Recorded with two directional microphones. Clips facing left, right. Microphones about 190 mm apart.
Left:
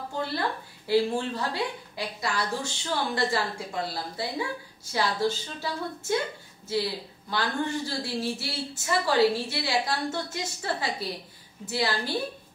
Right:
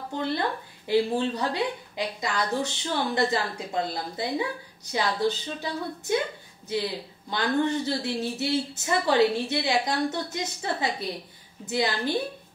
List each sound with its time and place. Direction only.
0.8 s a woman's voice: 20° right (ahead or behind)
7.2 s a woman's voice: 20° right (ahead or behind)